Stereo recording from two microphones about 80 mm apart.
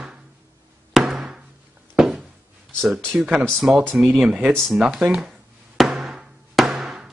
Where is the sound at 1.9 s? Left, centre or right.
Centre.